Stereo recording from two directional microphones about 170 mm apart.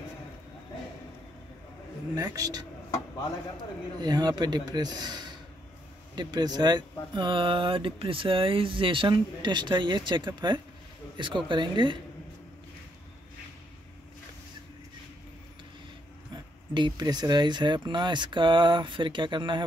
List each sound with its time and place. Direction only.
2.1 s speech: 20° right (ahead or behind)
4.0 s speech: 25° right (ahead or behind)
16.7 s speech: 25° right (ahead or behind)